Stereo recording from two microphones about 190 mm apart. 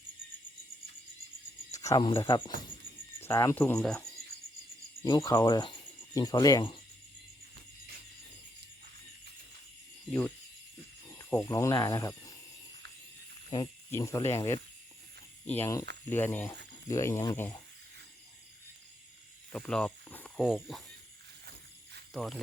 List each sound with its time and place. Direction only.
1.7 s speech: 15° left (ahead or behind)
5.0 s speech: 20° left (ahead or behind)
10.1 s speech: 10° left (ahead or behind)
11.1 s a sound: 15° left (ahead or behind)
11.4 s speech: 15° left (ahead or behind)
13.9 s speech: 15° left (ahead or behind)
19.5 s a sound: 5° left (ahead or behind)
22.1 s speech: centre (ahead or behind)